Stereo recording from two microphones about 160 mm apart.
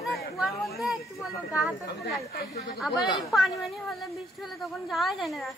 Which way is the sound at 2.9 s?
25° left (ahead or behind).